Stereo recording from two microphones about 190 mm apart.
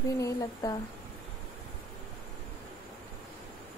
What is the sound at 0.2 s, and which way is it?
Speech, 20° left (ahead or behind).